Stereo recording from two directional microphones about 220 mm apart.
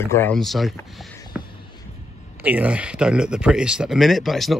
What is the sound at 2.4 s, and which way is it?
Speech, 5° right (ahead or behind).